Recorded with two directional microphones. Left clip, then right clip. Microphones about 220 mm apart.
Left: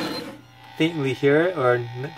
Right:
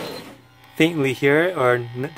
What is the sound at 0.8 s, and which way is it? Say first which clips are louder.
Speech: right 3 dB; 50° right (ahead or behind).